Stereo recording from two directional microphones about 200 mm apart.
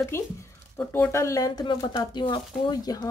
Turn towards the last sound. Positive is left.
turn(degrees=20)  # may be behind; listen again after turning